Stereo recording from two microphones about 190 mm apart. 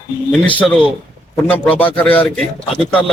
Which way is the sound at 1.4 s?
10° left (ahead or behind).